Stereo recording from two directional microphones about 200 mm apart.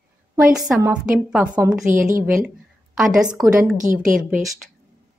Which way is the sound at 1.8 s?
45° right (ahead or behind).